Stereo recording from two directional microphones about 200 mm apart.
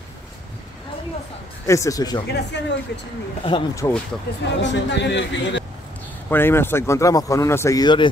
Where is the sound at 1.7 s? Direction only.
15° left (ahead or behind).